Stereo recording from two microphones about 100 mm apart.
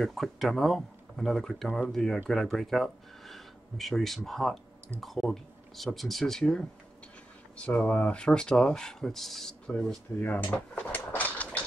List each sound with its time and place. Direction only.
0.0 s speech: centre (ahead or behind)
10.2 s dishes: 15° left (ahead or behind)